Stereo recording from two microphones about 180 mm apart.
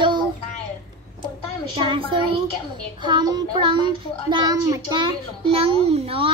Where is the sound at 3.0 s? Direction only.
25° right (ahead or behind).